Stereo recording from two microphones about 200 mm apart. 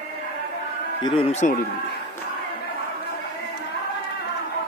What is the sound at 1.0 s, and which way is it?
Speech, 30° left (ahead or behind).